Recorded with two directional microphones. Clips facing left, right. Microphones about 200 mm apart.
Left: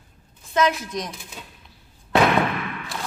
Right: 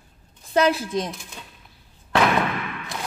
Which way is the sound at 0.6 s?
30° right (ahead or behind).